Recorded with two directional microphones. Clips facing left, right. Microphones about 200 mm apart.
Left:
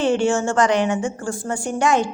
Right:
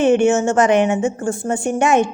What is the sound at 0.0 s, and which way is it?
A woman's voice, 20° right (ahead or behind).